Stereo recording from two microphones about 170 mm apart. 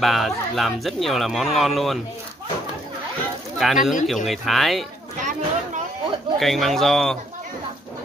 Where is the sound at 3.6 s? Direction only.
Centre (ahead or behind).